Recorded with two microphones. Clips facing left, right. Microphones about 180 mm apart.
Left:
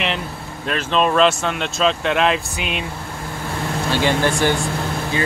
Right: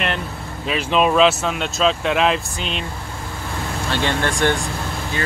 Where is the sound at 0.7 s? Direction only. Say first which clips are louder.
Right 1 dB; 10° right (ahead or behind).